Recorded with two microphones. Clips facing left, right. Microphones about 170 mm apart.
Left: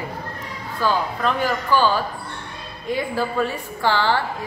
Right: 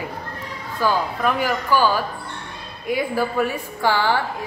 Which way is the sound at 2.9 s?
10° right (ahead or behind).